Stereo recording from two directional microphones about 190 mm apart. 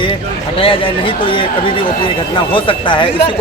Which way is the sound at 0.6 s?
25° left (ahead or behind).